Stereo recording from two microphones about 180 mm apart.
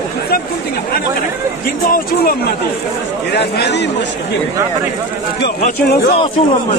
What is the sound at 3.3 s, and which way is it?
Speech, 70° left (ahead or behind).